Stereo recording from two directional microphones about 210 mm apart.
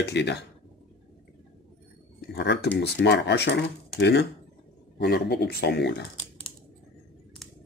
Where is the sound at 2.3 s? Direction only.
55° left (ahead or behind).